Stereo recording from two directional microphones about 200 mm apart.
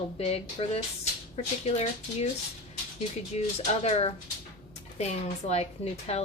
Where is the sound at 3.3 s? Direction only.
35° left (ahead or behind).